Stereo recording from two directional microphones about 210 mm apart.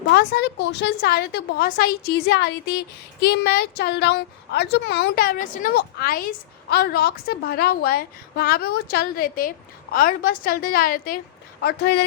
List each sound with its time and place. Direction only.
0.1 s a woman's voice: 50° left (ahead or behind)